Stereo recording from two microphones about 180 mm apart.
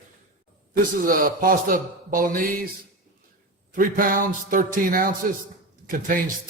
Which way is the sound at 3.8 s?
50° right (ahead or behind).